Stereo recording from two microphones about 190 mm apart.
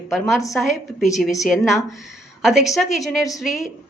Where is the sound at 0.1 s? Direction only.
Centre (ahead or behind).